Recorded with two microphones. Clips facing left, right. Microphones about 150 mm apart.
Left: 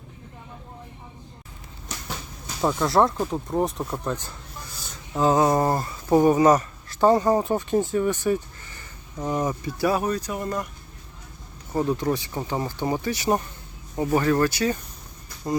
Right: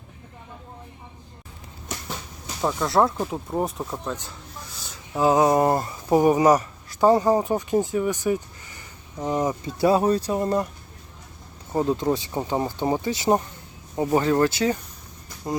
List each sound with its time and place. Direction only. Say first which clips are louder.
2.6 s speech: left 1 dB; centre (ahead or behind); by 10.7 s 30° right (ahead or behind)
11.7 s speech: right 1 dB; 20° right (ahead or behind)